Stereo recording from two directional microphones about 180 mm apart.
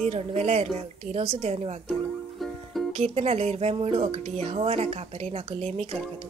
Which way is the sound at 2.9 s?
35° right (ahead or behind).